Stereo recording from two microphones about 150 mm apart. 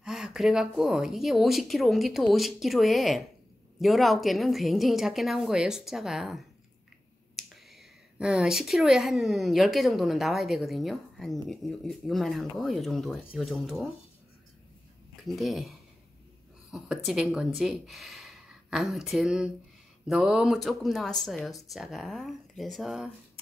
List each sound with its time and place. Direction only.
0.0 s speech: 5° right (ahead or behind)
8.2 s speech: 5° right (ahead or behind)
15.2 s speech: centre (ahead or behind)